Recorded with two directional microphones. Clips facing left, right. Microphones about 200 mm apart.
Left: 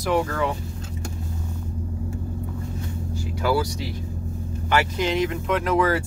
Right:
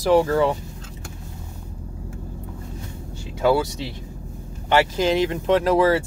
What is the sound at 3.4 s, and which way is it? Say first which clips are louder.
Speech: right 4 dB; 25° right (ahead or behind).